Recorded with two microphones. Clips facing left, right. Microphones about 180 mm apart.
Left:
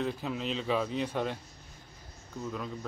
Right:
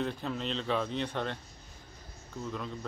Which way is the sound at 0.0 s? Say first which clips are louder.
Left 1 dB; 5° left (ahead or behind).